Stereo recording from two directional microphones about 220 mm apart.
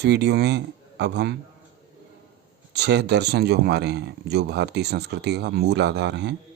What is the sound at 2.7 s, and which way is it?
Speech, 50° right (ahead or behind).